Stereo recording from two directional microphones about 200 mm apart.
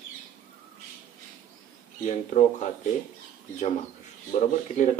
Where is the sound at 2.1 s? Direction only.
35° left (ahead or behind).